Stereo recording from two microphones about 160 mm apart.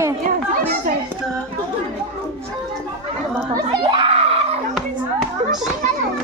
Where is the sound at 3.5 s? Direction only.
30° right (ahead or behind).